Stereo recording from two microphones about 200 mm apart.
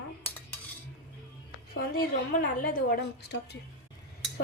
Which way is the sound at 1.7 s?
50° left (ahead or behind).